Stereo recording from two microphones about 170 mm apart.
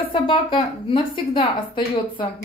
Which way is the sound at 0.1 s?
30° left (ahead or behind).